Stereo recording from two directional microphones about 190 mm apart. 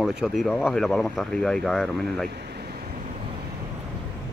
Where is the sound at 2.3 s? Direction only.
60° right (ahead or behind).